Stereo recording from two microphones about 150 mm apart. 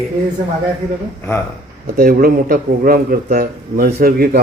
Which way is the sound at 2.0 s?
70° right (ahead or behind).